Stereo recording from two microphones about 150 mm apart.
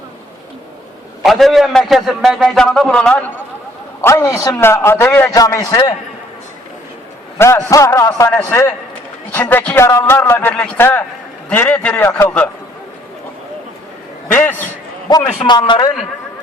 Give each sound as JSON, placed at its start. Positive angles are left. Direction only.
{"t": 1.2, "sound": "a man's voice", "side_deg": 0}
{"t": 4.0, "sound": "a man's voice", "side_deg": 20}
{"t": 7.3, "sound": "a man's voice", "side_deg": 15}
{"t": 14.3, "sound": "a man's voice", "side_deg": 15}
{"t": 15.4, "sound": "a man's voice", "side_deg": 30}